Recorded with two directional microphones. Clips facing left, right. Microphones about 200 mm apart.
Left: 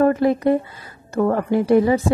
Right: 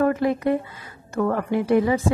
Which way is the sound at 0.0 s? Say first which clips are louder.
Left 4 dB; 35° left (ahead or behind).